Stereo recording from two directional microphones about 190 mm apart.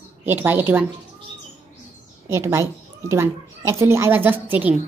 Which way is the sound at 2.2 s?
15° right (ahead or behind).